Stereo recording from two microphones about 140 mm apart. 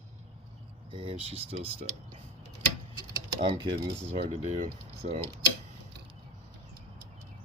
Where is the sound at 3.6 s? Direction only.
45° right (ahead or behind).